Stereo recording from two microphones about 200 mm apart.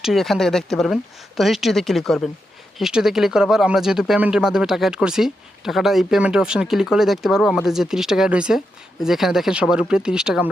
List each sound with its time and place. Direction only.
0.0 s speech: centre (ahead or behind)